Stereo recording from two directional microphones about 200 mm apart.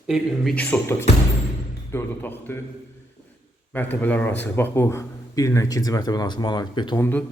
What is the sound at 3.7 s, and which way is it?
A man's voice, 10° left (ahead or behind).